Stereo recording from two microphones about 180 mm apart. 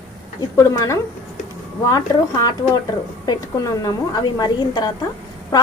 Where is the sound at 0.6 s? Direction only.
15° left (ahead or behind).